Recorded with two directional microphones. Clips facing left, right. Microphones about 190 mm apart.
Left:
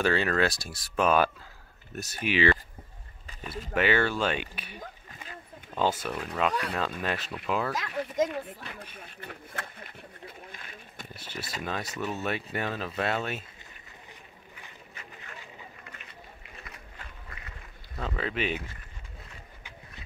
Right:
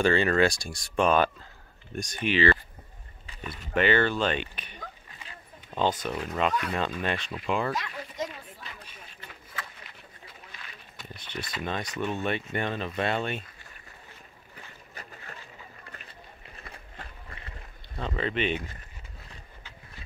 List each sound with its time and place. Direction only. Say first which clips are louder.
0.0 s speech: right 3 dB; 5° left (ahead or behind)
3.7 s speech: right 2 dB; 10° left (ahead or behind)
6.1 s speech: right 2 dB; 5° right (ahead or behind)
7.0 s speech: right 1 dB; 5° left (ahead or behind)
7.9 s speech: left 8 dB; 60° left (ahead or behind)
8.6 s rowboat: left 4 dB; 60° left (ahead or behind)
11.1 s speech: right 2 dB; 5° left (ahead or behind)
15.0 s a sound: right 4 dB; 35° right (ahead or behind)
15.9 s run: right 1 dB; 35° right (ahead or behind)
17.3 s run: right 1 dB; 30° right (ahead or behind)
17.9 s speech: right 2 dB; 5° left (ahead or behind)